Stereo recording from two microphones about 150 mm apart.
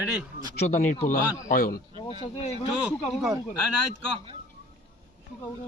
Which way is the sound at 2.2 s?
45° left (ahead or behind).